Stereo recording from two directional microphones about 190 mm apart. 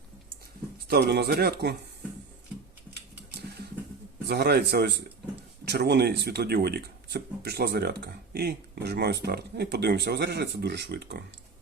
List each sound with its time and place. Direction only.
0.9 s speech: 60° right (ahead or behind)
4.3 s speech: 60° right (ahead or behind)